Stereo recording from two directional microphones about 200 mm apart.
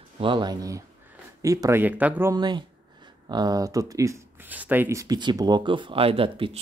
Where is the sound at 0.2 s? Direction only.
25° right (ahead or behind).